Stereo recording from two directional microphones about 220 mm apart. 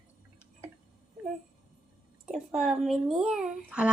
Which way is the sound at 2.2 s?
Centre (ahead or behind).